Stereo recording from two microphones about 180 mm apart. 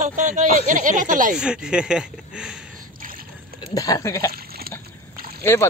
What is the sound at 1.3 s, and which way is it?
Speech, 5° right (ahead or behind).